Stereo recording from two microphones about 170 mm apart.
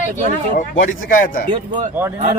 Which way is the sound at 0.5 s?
50° left (ahead or behind).